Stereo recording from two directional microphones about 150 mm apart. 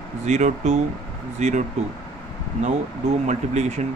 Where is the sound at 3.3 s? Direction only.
50° right (ahead or behind).